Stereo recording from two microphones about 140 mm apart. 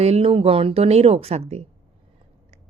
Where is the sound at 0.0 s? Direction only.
45° right (ahead or behind).